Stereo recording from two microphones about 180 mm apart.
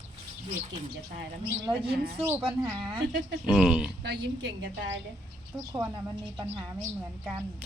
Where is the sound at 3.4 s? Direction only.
5° right (ahead or behind).